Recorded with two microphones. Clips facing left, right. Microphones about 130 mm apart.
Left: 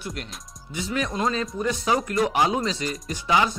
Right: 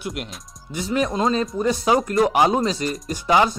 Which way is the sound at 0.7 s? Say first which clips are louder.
Right 5 dB; 35° right (ahead or behind).